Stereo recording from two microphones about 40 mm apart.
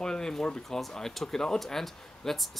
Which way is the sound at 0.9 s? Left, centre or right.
Centre.